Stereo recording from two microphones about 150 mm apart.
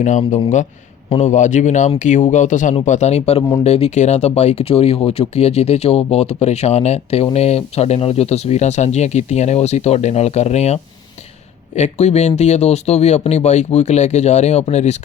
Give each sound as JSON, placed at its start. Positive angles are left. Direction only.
{"t": 0.0, "sound": "speech", "side_deg": 55}